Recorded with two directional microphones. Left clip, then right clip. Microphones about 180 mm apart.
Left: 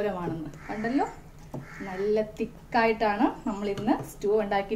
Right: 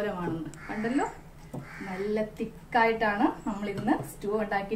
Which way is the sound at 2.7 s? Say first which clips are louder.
Even; 45° left (ahead or behind).